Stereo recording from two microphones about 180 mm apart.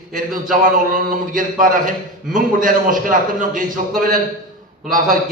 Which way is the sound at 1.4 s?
50° right (ahead or behind).